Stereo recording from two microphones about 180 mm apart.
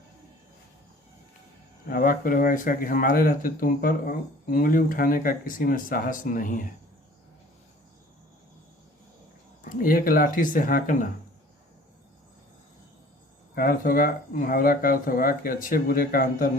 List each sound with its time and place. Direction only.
1.9 s speech: 50° left (ahead or behind)
9.6 s speech: 50° left (ahead or behind)
13.6 s speech: 50° left (ahead or behind)